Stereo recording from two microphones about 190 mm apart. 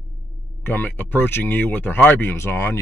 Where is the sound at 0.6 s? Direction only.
10° left (ahead or behind).